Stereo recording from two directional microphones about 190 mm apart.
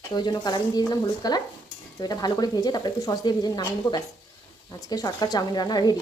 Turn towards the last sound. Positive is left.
turn(degrees=20)  # may be behind; listen again after turning